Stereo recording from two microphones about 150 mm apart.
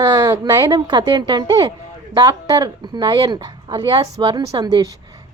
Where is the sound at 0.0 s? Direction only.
25° right (ahead or behind).